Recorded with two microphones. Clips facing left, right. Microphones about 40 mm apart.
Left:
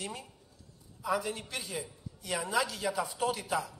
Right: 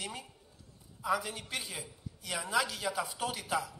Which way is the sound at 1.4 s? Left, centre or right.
Right.